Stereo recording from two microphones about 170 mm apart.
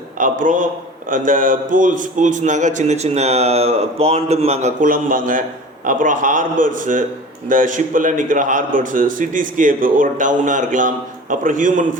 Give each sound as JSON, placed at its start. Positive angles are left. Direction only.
{"t": 0.2, "sound": "a man's voice", "side_deg": -50}